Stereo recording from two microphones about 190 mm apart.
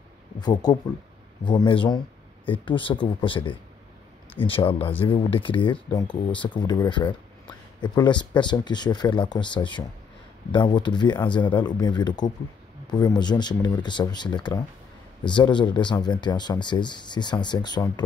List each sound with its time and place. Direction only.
0.4 s speech: 20° left (ahead or behind)